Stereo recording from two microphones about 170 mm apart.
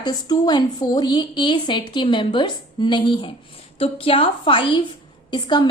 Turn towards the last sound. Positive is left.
turn(degrees=25)  # may be behind; listen again after turning